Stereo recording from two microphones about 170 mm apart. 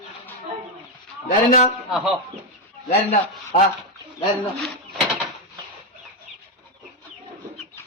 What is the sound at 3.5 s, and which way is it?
Speech, 45° left (ahead or behind).